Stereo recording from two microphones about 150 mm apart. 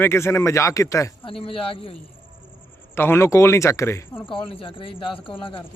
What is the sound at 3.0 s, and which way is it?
Speech, 15° left (ahead or behind).